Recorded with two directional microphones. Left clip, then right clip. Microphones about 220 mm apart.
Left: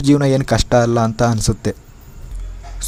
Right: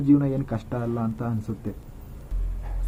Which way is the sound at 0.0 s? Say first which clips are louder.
Left 7 dB; 40° left (ahead or behind).